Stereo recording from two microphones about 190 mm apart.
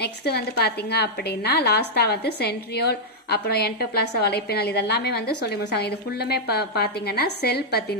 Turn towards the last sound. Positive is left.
turn(degrees=55)  # may be behind; listen again after turning